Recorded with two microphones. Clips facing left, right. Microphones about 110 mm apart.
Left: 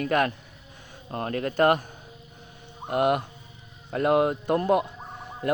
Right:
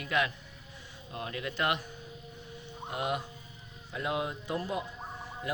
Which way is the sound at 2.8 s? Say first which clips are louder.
Left 10 dB; 60° left (ahead or behind).